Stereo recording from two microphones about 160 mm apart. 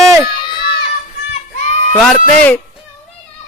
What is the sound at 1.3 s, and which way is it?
Child singing, 45° left (ahead or behind).